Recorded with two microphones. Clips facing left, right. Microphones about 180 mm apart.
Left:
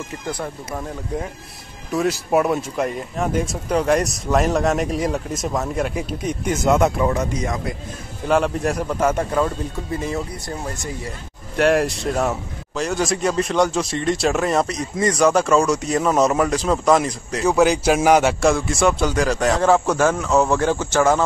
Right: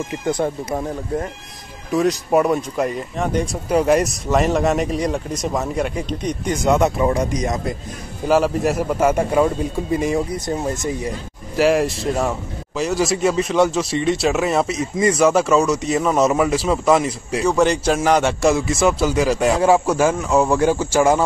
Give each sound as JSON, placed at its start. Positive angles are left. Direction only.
{"t": 1.9, "sound": "a man's voice", "side_deg": 0}
{"t": 3.6, "sound": "a man's voice", "side_deg": -10}
{"t": 7.2, "sound": "speech", "side_deg": -15}
{"t": 8.3, "sound": "speech", "side_deg": 0}
{"t": 11.5, "sound": "a man's voice", "side_deg": 0}